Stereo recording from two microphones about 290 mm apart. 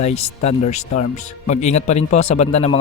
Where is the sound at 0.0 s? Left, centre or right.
Left.